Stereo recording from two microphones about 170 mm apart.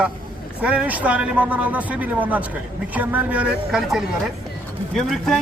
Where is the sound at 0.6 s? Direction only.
10° right (ahead or behind).